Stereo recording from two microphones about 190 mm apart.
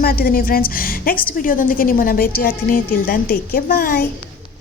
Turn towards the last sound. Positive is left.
turn(degrees=50)  # may be behind; listen again after turning